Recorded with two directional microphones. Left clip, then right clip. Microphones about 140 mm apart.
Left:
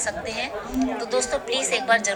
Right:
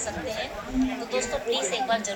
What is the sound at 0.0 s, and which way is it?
A woman's voice, 45° left (ahead or behind).